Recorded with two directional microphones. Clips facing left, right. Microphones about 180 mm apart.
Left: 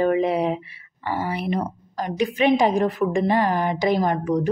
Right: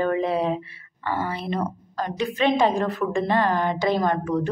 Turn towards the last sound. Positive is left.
turn(degrees=15)  # may be behind; listen again after turning